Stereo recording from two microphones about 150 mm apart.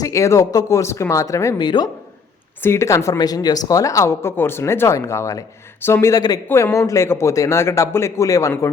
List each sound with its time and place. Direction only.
0.0 s speech: 20° left (ahead or behind)
2.6 s speech: 15° left (ahead or behind)